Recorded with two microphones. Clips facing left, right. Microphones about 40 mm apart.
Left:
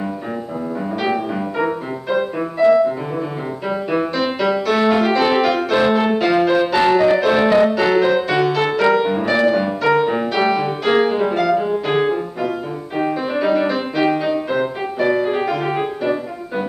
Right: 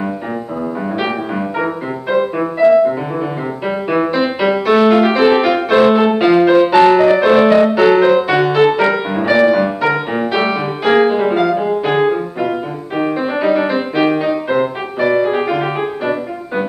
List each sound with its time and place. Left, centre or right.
1.6 s music: centre